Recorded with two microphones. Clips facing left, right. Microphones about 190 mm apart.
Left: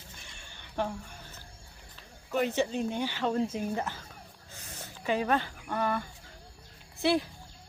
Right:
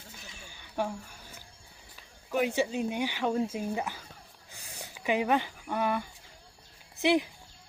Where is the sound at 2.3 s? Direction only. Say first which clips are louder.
Even; 10° right (ahead or behind).